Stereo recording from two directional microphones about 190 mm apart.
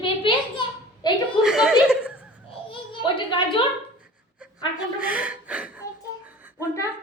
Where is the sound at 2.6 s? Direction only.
25° left (ahead or behind).